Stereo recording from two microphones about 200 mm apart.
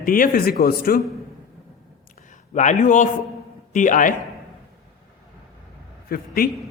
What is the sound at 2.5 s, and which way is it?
A man's voice, 40° left (ahead or behind).